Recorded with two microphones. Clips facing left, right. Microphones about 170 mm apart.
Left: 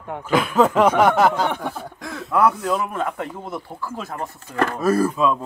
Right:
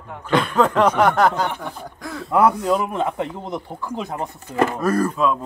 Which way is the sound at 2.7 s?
20° right (ahead or behind).